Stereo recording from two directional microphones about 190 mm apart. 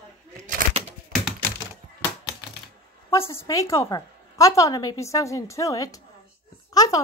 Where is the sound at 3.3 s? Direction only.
15° left (ahead or behind).